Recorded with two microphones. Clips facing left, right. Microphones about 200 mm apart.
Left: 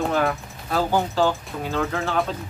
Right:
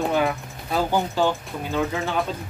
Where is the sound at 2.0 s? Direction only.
Centre (ahead or behind).